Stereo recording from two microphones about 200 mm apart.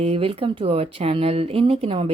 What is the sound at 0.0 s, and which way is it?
A woman's voice, 30° right (ahead or behind).